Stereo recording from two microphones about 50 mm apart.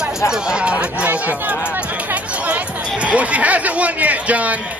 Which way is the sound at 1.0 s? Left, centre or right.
Right.